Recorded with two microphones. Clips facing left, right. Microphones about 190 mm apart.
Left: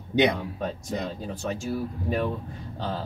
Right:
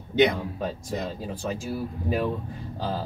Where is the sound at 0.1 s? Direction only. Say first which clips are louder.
Right 1 dB; 15° left (ahead or behind).